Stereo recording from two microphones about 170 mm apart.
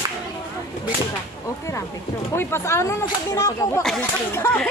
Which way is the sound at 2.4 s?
15° left (ahead or behind).